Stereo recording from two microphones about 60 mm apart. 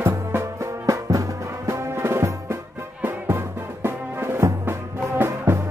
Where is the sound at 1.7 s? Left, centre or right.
Right.